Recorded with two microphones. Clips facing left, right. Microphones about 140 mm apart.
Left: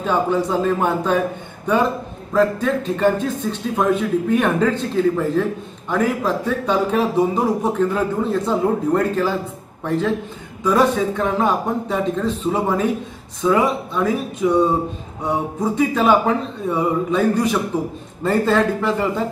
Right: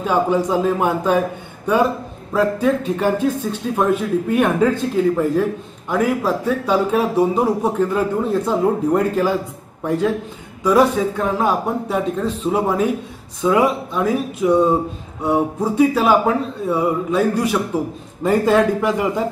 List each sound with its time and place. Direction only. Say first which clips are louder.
0.0 s a man's voice: right 1 dB; 10° right (ahead or behind)
2.3 s a man's voice: right 1 dB; 10° right (ahead or behind)
4.3 s a man's voice: right 2 dB; 10° right (ahead or behind)